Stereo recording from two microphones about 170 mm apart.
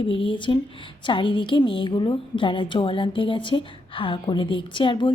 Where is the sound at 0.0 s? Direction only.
30° left (ahead or behind).